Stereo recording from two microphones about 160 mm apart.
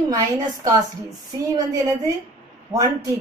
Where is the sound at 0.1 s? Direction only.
20° right (ahead or behind).